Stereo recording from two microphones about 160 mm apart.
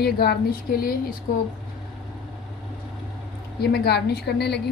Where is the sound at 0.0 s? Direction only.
90° left; by 0.9 s 70° left (ahead or behind).